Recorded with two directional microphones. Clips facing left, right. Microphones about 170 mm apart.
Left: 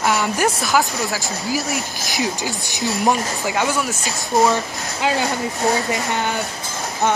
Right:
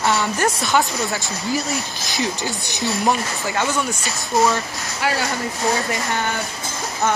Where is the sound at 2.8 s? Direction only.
15° left (ahead or behind).